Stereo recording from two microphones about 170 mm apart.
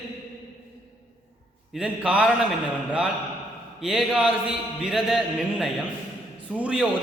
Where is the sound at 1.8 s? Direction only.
5° right (ahead or behind).